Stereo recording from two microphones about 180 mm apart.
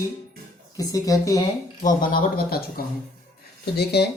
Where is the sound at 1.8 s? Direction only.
50° left (ahead or behind).